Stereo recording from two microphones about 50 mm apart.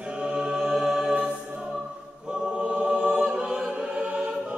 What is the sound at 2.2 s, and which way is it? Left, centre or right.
Choir, centre.